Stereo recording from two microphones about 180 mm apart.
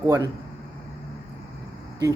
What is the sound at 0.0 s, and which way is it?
Speech, 20° right (ahead or behind).